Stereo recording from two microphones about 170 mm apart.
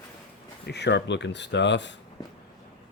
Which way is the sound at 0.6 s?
85° left.